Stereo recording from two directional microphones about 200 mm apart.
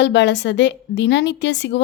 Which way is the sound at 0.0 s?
60° left (ahead or behind).